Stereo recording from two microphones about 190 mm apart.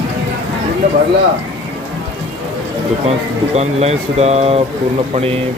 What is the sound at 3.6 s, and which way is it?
Speech, 35° right (ahead or behind).